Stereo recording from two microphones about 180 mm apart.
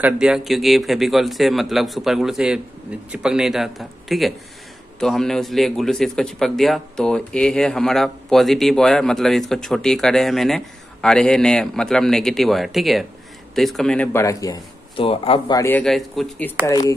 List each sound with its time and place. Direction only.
0.0 s a man's voice: 5° right (ahead or behind); by 15.0 s 20° left (ahead or behind)
15.0 s speech: 30° left (ahead or behind)
15.5 s speech: 10° left (ahead or behind)
16.6 s speech: 20° left (ahead or behind)